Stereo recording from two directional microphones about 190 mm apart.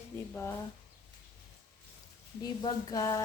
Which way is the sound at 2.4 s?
20° left (ahead or behind).